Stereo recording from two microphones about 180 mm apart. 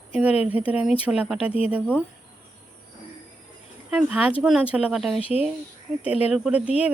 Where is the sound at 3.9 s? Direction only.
5° right (ahead or behind).